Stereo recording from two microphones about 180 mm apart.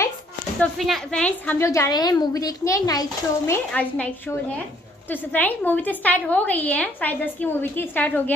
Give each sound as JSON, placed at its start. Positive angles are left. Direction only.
{"t": 0.6, "sound": "a woman's voice", "side_deg": 0}
{"t": 3.7, "sound": "a woman's voice", "side_deg": 5}